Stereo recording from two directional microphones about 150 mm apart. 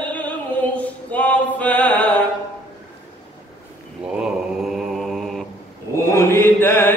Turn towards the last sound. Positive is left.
turn(degrees=15)  # may be behind; listen again after turning